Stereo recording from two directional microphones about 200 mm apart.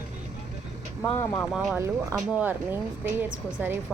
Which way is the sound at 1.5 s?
5° right (ahead or behind).